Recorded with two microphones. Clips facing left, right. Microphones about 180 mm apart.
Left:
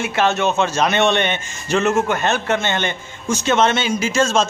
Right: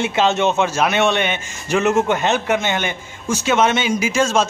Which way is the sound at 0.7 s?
5° right (ahead or behind).